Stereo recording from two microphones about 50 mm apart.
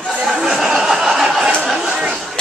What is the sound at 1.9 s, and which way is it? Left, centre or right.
Chatter, centre.